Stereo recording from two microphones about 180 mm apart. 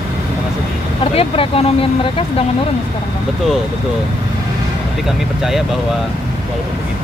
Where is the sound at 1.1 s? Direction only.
30° left (ahead or behind).